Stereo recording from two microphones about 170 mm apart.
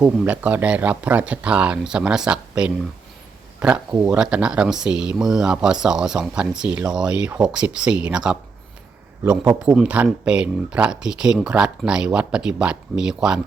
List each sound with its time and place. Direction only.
0.0 s speech: 10° right (ahead or behind)